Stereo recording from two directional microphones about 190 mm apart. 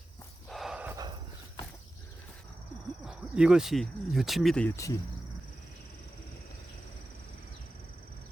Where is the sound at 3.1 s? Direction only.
5° right (ahead or behind).